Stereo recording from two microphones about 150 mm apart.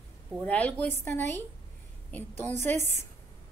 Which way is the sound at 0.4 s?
10° left (ahead or behind).